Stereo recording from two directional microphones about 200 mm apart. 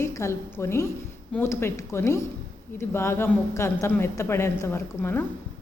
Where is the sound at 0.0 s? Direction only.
15° left (ahead or behind).